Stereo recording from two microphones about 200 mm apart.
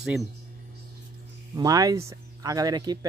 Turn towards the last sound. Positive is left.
turn(degrees=-20)  # may be behind; listen again after turning